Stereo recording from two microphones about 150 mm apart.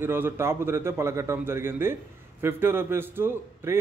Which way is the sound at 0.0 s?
15° right (ahead or behind).